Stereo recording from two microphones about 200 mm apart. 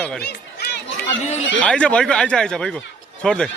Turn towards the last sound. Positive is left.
turn(degrees=5)  # may be behind; listen again after turning